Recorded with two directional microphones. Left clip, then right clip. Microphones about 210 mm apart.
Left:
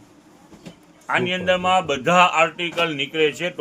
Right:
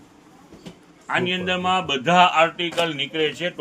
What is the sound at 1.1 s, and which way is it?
Speech, 35° left (ahead or behind).